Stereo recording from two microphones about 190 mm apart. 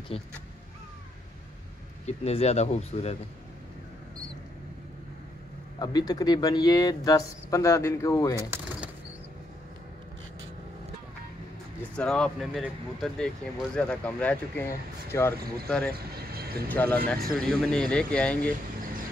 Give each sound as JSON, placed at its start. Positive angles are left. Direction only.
{"t": 0.1, "sound": "speech", "side_deg": 30}
{"t": 2.0, "sound": "speech", "side_deg": 35}
{"t": 5.8, "sound": "speech", "side_deg": 20}
{"t": 8.4, "sound": "a sound", "side_deg": -10}
{"t": 12.0, "sound": "speech", "side_deg": 5}
{"t": 15.3, "sound": "speech", "side_deg": -55}
{"t": 15.9, "sound": "vehicle", "side_deg": -55}
{"t": 16.6, "sound": "speech", "side_deg": 10}